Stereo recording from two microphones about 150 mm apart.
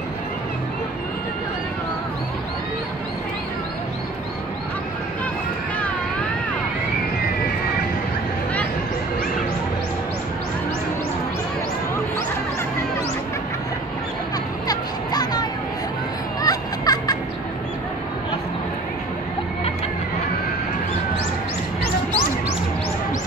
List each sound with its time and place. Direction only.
14.7 s music: 25° left (ahead or behind)